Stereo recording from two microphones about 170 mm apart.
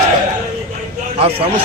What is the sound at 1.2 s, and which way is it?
Speech, 35° right (ahead or behind).